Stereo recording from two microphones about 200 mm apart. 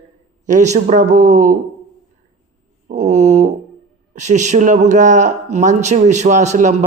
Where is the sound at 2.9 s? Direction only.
35° right (ahead or behind).